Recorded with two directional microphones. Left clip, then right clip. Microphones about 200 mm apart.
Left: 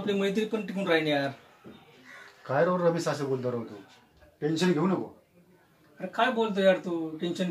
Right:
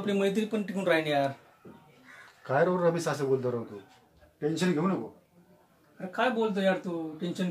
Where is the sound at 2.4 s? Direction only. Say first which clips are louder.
Even; 10° right (ahead or behind).